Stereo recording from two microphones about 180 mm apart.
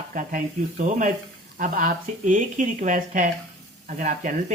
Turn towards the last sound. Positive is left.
turn(degrees=-45)  # may be behind; listen again after turning